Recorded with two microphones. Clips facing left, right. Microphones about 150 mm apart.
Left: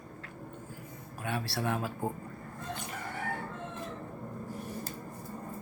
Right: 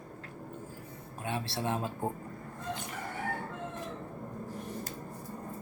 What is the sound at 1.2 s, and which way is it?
Speech, 20° right (ahead or behind).